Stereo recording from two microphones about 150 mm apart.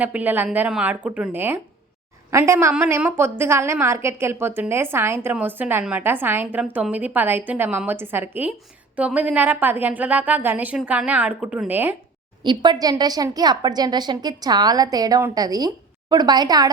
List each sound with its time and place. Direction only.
0.0 s a woman's voice: 10° right (ahead or behind)
12.4 s speech: 30° right (ahead or behind)